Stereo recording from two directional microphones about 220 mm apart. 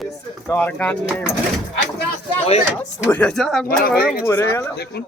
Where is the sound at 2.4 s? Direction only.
25° left (ahead or behind).